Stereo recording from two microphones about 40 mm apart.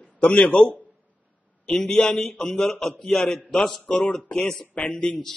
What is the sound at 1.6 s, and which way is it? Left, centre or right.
A man's voice, centre.